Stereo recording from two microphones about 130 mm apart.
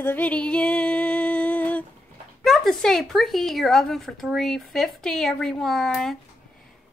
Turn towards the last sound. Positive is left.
turn(degrees=5)  # may be behind; listen again after turning